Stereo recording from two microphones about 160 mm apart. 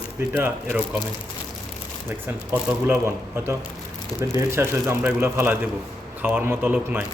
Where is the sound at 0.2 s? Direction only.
15° right (ahead or behind).